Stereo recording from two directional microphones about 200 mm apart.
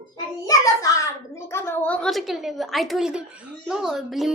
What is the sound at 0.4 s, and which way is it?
A child's voice, 15° left (ahead or behind).